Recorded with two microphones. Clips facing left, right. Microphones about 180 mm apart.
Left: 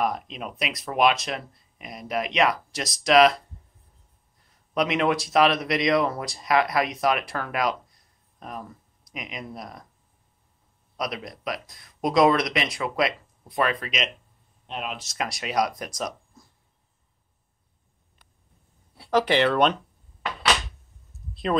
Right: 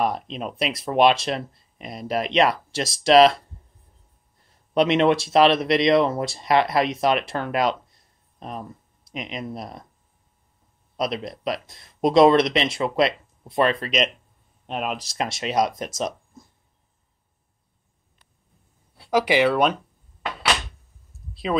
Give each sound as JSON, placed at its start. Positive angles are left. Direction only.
{"t": 0.0, "sound": "speech", "side_deg": -30}
{"t": 4.7, "sound": "speech", "side_deg": -30}
{"t": 11.0, "sound": "speech", "side_deg": -25}
{"t": 13.8, "sound": "speech", "side_deg": 0}
{"t": 14.7, "sound": "speech", "side_deg": -45}
{"t": 16.0, "sound": "a sound", "side_deg": -25}
{"t": 18.9, "sound": "speech", "side_deg": -10}
{"t": 21.1, "sound": "a sound", "side_deg": 0}